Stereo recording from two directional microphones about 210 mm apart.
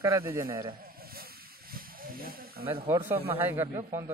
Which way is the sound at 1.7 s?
45° right (ahead or behind).